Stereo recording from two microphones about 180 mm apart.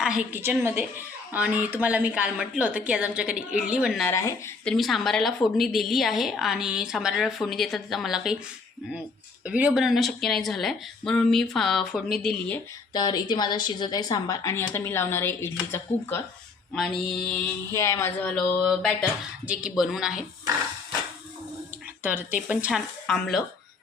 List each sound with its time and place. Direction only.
0.0 s a woman's voice: 5° right (ahead or behind)
4.0 s speech: 15° left (ahead or behind)
4.6 s a woman's voice: centre (ahead or behind)
9.4 s a woman's voice: 5° right (ahead or behind)
12.9 s a woman's voice: 25° left (ahead or behind)
16.7 s a woman's voice: centre (ahead or behind)
17.7 s a woman's voice: 15° left (ahead or behind); by 20.2 s centre (ahead or behind)
22.0 s a woman's voice: 10° right (ahead or behind)
23.0 s a woman's voice: 5° left (ahead or behind)